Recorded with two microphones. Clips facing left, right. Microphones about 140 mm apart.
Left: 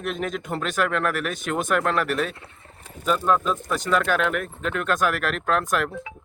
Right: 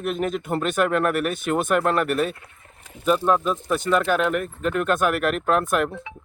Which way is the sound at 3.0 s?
10° right (ahead or behind).